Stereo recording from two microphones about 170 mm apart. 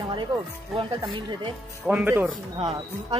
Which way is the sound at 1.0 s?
30° right (ahead or behind).